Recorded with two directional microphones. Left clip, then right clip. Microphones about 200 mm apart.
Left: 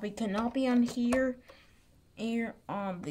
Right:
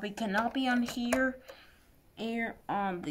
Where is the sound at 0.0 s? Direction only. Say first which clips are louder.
Right 2 dB; 45° left (ahead or behind).